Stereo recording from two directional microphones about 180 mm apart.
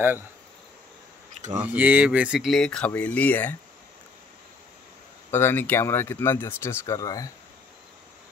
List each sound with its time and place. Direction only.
1.3 s a sound: 40° right (ahead or behind)
1.6 s speech: 10° right (ahead or behind); by 3.5 s 10° left (ahead or behind)
5.3 s speech: 10° left (ahead or behind)